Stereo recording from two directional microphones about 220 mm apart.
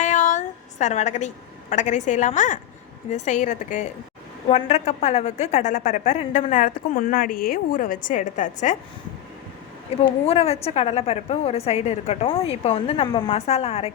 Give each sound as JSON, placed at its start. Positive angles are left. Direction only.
{"t": 0.0, "sound": "a sound", "side_deg": 35}
{"t": 1.7, "sound": "a woman's voice", "side_deg": 35}
{"t": 9.9, "sound": "a woman's voice", "side_deg": 25}